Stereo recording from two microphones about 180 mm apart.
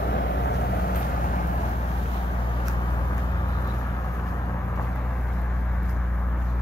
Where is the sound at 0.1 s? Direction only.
70° left (ahead or behind).